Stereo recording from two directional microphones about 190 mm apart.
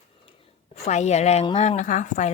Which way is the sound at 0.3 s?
35° left (ahead or behind).